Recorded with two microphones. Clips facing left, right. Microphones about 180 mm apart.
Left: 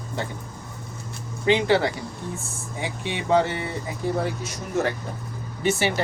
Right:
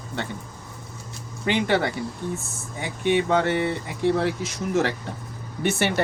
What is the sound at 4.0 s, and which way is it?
Speech, 80° right.